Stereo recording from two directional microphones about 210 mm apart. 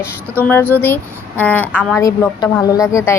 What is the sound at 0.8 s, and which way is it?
A woman's voice, 10° left (ahead or behind).